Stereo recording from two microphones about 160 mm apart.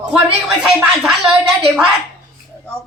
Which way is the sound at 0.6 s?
5° right (ahead or behind).